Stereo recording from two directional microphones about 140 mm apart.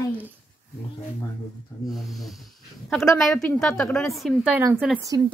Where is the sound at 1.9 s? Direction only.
Centre (ahead or behind).